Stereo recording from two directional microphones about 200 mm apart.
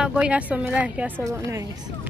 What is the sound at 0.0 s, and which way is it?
A woman's voice, 5° right (ahead or behind).